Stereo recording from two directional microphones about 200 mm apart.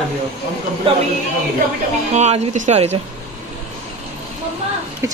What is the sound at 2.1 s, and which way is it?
Speech, 35° right (ahead or behind).